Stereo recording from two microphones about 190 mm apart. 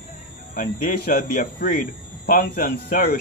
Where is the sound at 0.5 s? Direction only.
50° left (ahead or behind).